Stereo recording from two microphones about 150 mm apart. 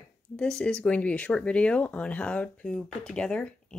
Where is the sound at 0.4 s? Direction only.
5° left (ahead or behind).